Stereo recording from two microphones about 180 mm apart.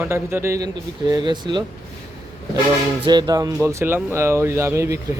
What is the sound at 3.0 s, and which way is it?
Speech, 25° right (ahead or behind).